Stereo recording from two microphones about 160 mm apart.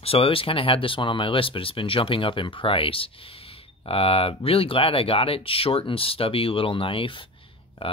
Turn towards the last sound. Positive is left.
turn(degrees=35)  # may be behind; listen again after turning